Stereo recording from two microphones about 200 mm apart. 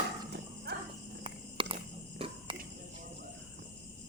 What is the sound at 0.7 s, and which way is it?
Horse, 55° right (ahead or behind).